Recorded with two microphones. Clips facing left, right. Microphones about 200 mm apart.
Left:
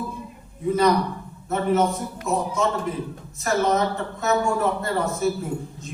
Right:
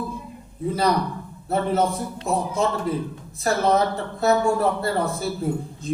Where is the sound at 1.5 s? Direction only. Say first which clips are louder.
Left 1 dB; 30° right (ahead or behind).